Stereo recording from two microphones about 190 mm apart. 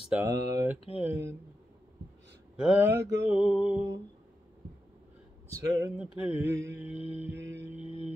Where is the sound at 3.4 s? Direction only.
5° right (ahead or behind).